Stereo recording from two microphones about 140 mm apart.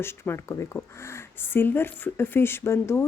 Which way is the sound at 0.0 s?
20° left (ahead or behind).